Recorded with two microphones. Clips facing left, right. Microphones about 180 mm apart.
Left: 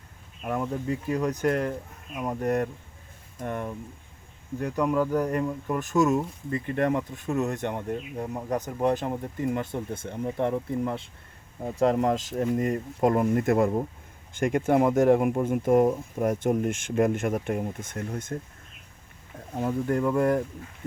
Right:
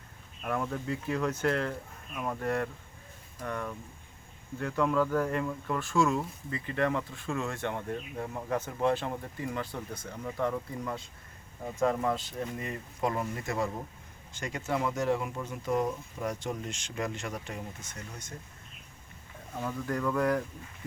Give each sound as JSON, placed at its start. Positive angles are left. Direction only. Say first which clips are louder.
{"t": 0.4, "sound": "speech", "louder": "left 3 dB", "side_deg": 15}
{"t": 0.9, "sound": "speech", "louder": "left 4 dB", "side_deg": 40}
{"t": 1.2, "sound": "speech", "louder": "left 3 dB", "side_deg": 15}
{"t": 6.5, "sound": "speech", "louder": "left 5 dB", "side_deg": 50}
{"t": 6.9, "sound": "speech", "louder": "left 6 dB", "side_deg": 20}
{"t": 19.5, "sound": "speech", "louder": "left 7 dB", "side_deg": 30}